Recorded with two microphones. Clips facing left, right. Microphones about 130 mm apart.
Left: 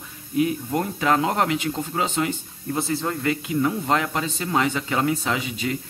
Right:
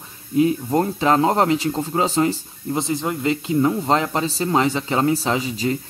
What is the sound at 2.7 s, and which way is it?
Speech, 20° right (ahead or behind).